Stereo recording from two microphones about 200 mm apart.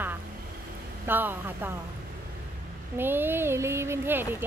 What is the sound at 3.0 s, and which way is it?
A woman's voice, 10° right (ahead or behind).